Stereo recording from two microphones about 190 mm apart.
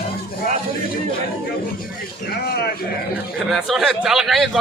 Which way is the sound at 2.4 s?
55° left (ahead or behind).